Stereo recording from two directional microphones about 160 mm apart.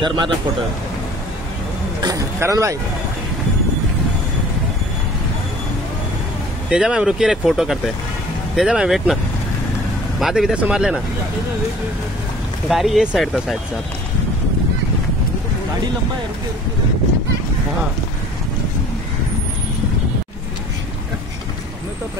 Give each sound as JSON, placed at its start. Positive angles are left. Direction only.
{"t": 0.0, "sound": "a man's voice", "side_deg": -30}
{"t": 2.0, "sound": "a sound", "side_deg": -25}
{"t": 6.7, "sound": "speech", "side_deg": -5}
{"t": 12.6, "sound": "speech", "side_deg": 0}